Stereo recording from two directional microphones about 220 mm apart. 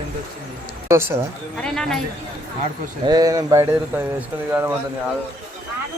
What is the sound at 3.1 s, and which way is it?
Speech, 15° right (ahead or behind).